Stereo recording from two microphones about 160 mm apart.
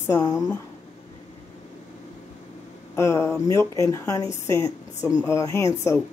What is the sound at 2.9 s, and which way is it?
A woman's voice, 15° left (ahead or behind).